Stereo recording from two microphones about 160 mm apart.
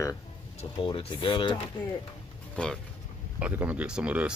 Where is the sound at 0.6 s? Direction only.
35° left (ahead or behind).